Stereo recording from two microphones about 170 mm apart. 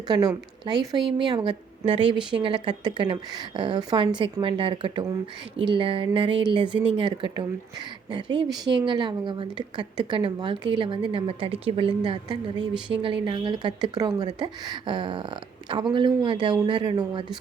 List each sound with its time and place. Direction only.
1.2 s a woman's voice: 25° right (ahead or behind)